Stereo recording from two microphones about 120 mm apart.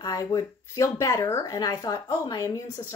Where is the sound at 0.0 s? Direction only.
30° left (ahead or behind).